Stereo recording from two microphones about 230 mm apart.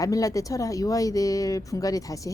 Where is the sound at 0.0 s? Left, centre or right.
Centre.